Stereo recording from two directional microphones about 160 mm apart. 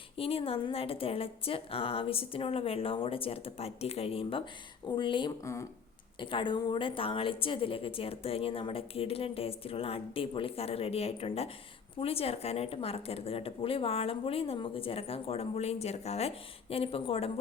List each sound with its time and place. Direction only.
0.2 s a woman's voice: 35° left (ahead or behind)
5.4 s speech: 20° left (ahead or behind)
6.1 s a woman's voice: 30° left (ahead or behind)